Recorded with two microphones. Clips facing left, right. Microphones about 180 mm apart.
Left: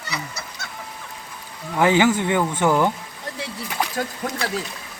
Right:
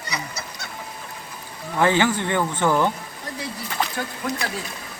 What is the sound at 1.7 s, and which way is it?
Speech, 10° left (ahead or behind).